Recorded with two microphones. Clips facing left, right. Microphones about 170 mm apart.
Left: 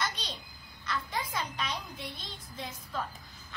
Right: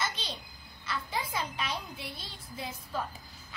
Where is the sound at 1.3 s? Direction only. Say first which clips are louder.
Right 1 dB; 5° right (ahead or behind).